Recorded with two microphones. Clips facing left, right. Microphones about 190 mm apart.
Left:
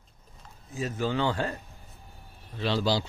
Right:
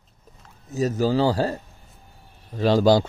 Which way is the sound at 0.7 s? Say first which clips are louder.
Right 8 dB; 40° right (ahead or behind).